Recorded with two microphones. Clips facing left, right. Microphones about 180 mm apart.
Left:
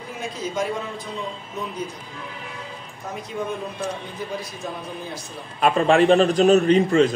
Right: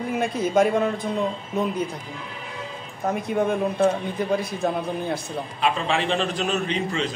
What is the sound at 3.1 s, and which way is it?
A man's voice, 55° right (ahead or behind).